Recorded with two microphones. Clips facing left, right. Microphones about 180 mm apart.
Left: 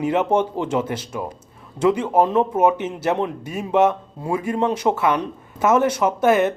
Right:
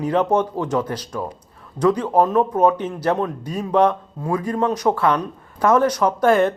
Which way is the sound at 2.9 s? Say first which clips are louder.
Right 1 dB; 20° left (ahead or behind).